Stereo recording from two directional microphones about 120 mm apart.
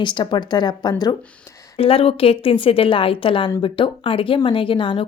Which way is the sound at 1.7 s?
50° left (ahead or behind).